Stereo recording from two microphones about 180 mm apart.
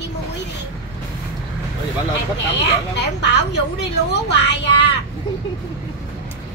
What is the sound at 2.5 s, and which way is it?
A woman's voice, 70° left (ahead or behind).